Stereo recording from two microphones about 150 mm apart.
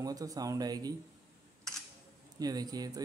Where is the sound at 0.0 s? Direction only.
25° right (ahead or behind).